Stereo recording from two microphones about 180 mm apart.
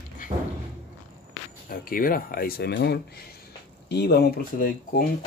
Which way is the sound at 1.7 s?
50° left (ahead or behind).